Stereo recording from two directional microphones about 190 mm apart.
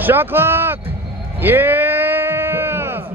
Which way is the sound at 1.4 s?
10° right (ahead or behind).